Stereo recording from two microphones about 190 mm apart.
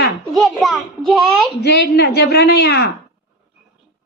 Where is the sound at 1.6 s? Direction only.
60° left (ahead or behind).